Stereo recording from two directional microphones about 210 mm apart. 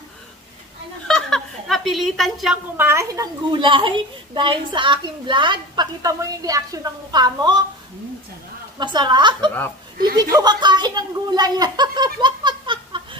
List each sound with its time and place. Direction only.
1.0 s a woman's voice: 5° left (ahead or behind); by 7.6 s 20° right (ahead or behind)
8.7 s a woman's voice: 20° right (ahead or behind)